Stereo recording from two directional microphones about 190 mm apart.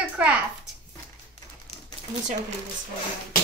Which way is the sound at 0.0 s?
5° right (ahead or behind).